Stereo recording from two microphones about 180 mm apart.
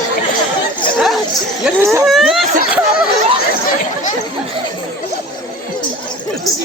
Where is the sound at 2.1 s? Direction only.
Centre (ahead or behind).